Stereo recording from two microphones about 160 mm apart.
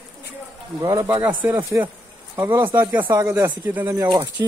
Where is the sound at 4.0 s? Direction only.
30° right (ahead or behind).